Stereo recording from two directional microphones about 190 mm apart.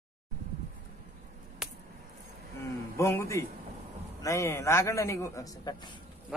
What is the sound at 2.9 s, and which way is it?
Speech, 15° left (ahead or behind).